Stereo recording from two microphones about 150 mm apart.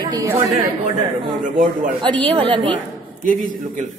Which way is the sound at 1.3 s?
35° right (ahead or behind).